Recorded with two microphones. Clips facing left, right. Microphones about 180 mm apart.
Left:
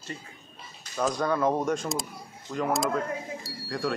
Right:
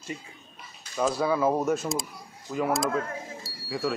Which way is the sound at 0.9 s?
5° right (ahead or behind).